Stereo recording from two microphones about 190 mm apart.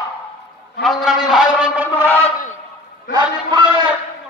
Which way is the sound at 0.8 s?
Centre (ahead or behind).